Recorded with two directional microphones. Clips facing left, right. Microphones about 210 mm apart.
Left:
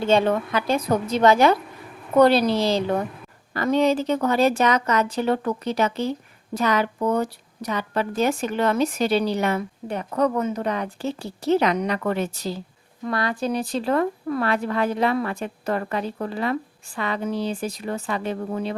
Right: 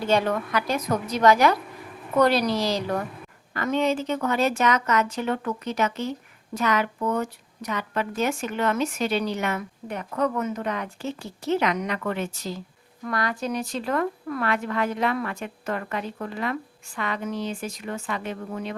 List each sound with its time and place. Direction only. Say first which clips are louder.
0.0 s a woman's voice: left 4 dB; 25° left (ahead or behind)